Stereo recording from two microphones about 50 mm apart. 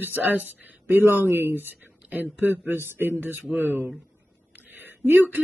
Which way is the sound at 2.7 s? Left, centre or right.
Right.